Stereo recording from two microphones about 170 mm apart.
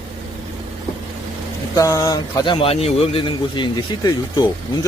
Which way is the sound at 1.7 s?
20° left (ahead or behind).